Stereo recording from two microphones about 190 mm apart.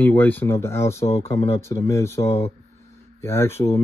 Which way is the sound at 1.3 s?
30° left (ahead or behind).